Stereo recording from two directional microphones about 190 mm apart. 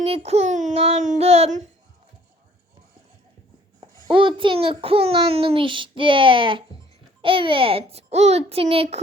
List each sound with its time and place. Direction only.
0.0 s child singing: 35° right (ahead or behind)
3.8 s a child's voice: 25° right (ahead or behind)